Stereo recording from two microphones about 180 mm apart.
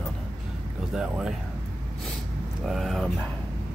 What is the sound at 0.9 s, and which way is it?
Speech, 5° right (ahead or behind).